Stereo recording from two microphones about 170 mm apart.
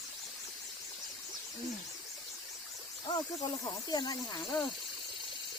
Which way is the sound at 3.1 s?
25° left (ahead or behind).